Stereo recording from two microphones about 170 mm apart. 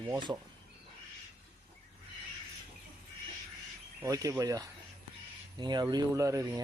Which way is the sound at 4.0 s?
20° right (ahead or behind).